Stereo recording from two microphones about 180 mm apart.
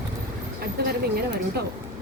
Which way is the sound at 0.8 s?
60° right (ahead or behind).